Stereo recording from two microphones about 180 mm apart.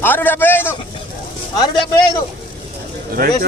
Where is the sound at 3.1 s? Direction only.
50° right (ahead or behind).